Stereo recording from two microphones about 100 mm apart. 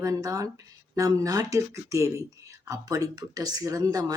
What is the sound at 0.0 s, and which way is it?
Speech, 35° right (ahead or behind).